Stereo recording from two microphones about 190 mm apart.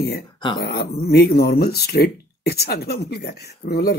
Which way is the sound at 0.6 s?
55° left (ahead or behind).